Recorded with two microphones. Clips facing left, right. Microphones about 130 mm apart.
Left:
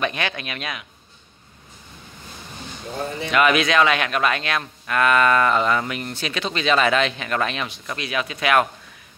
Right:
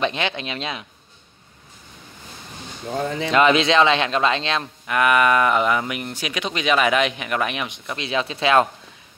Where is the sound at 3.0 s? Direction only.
90° right.